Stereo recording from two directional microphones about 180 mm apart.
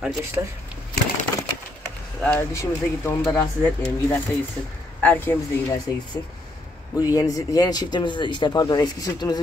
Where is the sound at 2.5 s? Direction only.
15° left (ahead or behind).